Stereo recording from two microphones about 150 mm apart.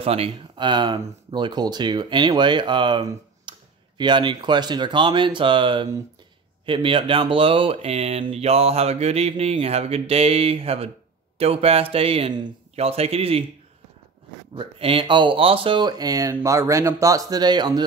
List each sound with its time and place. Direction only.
0.0 s speech: 40° right (ahead or behind)
14.5 s speech: 35° right (ahead or behind)